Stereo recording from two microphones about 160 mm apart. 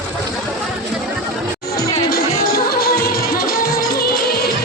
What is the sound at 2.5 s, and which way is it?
Music, 70° left (ahead or behind).